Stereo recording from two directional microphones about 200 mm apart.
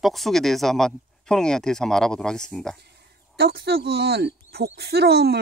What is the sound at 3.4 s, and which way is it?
Speech, 50° right (ahead or behind).